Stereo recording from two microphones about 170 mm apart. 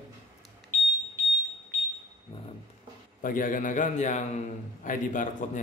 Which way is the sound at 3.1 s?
50° left (ahead or behind).